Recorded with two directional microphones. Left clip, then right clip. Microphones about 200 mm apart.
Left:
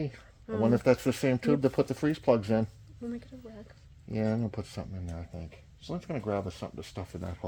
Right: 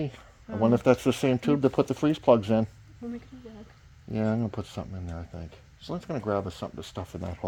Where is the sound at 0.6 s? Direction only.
30° right (ahead or behind).